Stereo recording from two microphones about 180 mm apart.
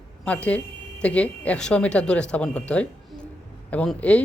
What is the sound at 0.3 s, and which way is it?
Speech, 5° left (ahead or behind).